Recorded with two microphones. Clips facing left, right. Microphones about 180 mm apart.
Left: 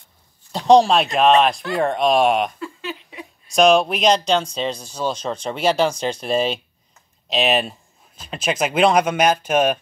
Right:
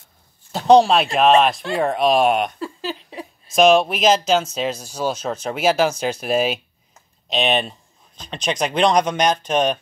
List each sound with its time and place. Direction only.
0.5 s speech: 5° right (ahead or behind)
2.6 s speech: 35° right (ahead or behind)
3.5 s speech: centre (ahead or behind)